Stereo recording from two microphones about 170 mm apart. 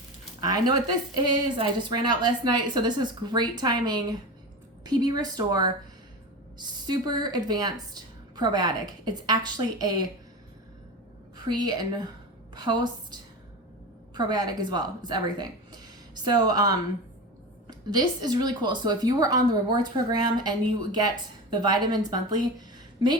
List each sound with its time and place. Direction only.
0.4 s a woman's voice: 25° right (ahead or behind)
11.4 s a woman's voice: 25° right (ahead or behind)
14.2 s a woman's voice: 25° right (ahead or behind)